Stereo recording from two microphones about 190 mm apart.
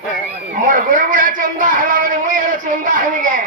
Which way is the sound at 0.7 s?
45° right (ahead or behind).